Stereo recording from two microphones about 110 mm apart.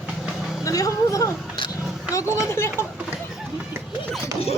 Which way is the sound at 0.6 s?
30° left (ahead or behind).